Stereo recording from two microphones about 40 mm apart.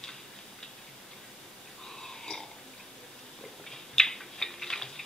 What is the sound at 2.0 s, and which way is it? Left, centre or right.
Burping, centre.